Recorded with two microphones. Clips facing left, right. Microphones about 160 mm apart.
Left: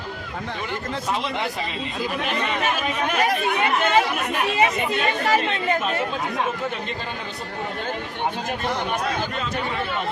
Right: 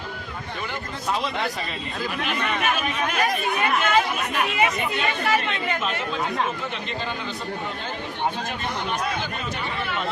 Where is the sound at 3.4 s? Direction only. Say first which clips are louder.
Left 2 dB; 25° left (ahead or behind).